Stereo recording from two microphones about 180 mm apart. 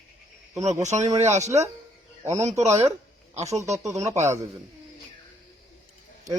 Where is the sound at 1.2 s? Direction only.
40° right (ahead or behind).